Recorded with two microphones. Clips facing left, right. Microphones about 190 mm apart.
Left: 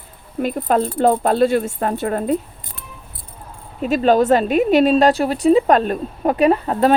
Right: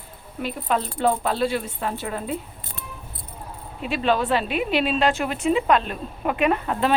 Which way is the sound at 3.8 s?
40° left (ahead or behind).